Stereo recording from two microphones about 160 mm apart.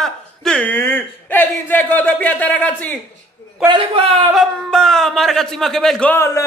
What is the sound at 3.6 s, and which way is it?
Speech, 30° right (ahead or behind).